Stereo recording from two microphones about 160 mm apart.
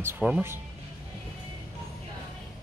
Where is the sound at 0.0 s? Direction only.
10° right (ahead or behind).